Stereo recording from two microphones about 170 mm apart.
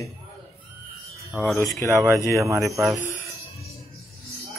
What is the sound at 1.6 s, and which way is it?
Speech, 15° left (ahead or behind).